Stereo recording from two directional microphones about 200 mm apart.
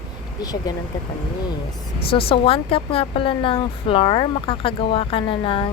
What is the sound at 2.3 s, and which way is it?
Speech, 25° left (ahead or behind).